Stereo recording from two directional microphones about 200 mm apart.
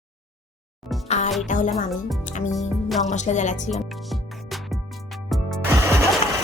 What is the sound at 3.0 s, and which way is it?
Speech, 35° left (ahead or behind).